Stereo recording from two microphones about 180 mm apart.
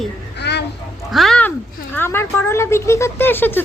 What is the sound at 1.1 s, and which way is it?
A woman's voice, centre (ahead or behind).